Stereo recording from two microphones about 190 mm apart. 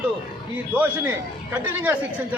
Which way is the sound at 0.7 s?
10° right (ahead or behind).